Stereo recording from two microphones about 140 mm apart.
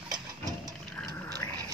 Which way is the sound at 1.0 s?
15° left (ahead or behind).